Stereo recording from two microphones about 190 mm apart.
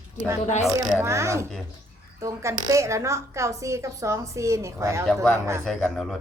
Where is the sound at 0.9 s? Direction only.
15° right (ahead or behind).